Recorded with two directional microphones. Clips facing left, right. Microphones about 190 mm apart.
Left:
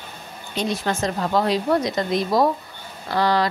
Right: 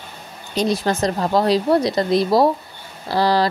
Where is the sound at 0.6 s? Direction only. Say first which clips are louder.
Right 4 dB; 35° right (ahead or behind).